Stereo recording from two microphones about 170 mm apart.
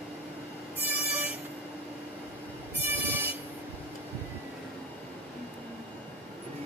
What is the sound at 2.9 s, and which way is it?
Vehicle, 10° right (ahead or behind).